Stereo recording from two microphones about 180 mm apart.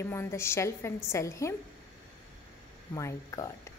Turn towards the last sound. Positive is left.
turn(degrees=15)  # may be behind; listen again after turning